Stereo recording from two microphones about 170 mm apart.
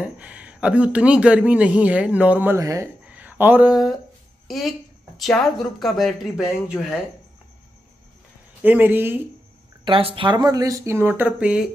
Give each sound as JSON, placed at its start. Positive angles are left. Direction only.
{"t": 0.0, "sound": "a woman's voice", "side_deg": -10}
{"t": 8.6, "sound": "speech", "side_deg": -10}
{"t": 9.8, "sound": "speech", "side_deg": -30}